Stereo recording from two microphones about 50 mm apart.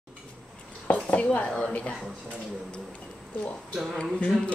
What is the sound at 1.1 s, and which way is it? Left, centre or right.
Speech, left.